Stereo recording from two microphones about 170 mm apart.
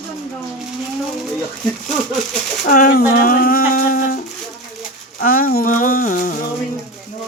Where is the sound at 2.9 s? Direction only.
65° left (ahead or behind).